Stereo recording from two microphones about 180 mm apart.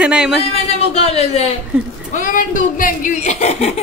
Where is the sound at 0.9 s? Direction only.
35° left (ahead or behind).